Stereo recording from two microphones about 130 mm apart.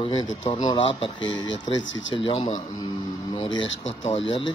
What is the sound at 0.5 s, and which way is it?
Speech, 35° left (ahead or behind).